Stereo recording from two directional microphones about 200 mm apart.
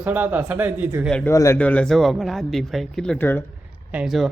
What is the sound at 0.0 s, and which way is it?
A man's voice, 10° right (ahead or behind).